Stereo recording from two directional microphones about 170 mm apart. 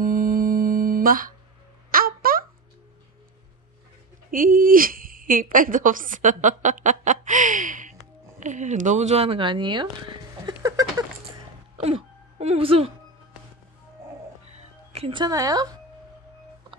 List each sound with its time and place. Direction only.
0.0 s music: 55° right (ahead or behind)
1.9 s a sound: 60° right (ahead or behind)
4.3 s a woman's voice: 55° right (ahead or behind); by 11.1 s 20° right (ahead or behind)
11.8 s speech: 35° right (ahead or behind)
14.9 s speech: 35° right (ahead or behind)